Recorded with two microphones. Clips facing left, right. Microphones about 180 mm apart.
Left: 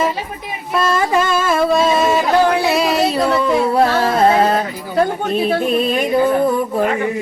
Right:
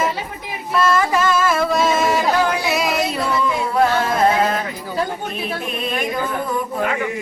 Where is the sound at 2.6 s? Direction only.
30° left (ahead or behind).